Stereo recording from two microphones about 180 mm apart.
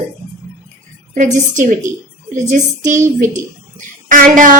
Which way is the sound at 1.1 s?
45° right (ahead or behind).